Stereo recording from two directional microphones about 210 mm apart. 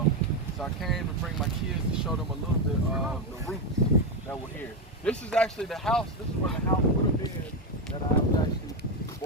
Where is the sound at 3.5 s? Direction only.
5° left (ahead or behind).